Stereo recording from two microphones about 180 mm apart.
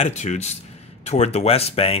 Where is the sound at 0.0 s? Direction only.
40° left (ahead or behind).